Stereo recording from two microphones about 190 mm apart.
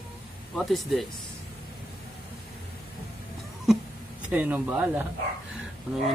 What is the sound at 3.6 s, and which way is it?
Chuckle, 5° right (ahead or behind).